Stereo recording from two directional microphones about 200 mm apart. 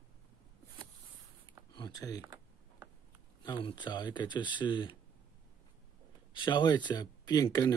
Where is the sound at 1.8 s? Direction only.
20° left (ahead or behind).